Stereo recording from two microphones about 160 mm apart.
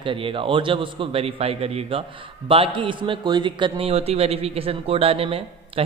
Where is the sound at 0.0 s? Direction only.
35° right (ahead or behind).